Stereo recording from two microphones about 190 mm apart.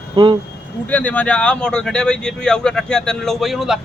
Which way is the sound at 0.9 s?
10° left (ahead or behind).